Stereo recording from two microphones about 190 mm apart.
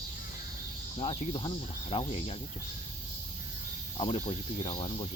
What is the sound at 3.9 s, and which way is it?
Speech, 30° left (ahead or behind).